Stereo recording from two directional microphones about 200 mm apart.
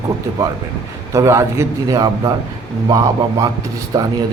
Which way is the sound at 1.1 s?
15° right (ahead or behind).